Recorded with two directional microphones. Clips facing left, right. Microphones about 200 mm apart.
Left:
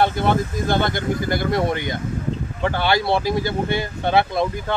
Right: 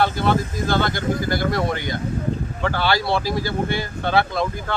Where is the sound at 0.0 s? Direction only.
20° left (ahead or behind).